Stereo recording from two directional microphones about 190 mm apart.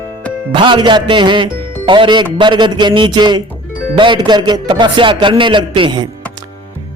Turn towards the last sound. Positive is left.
turn(degrees=-25)  # may be behind; listen again after turning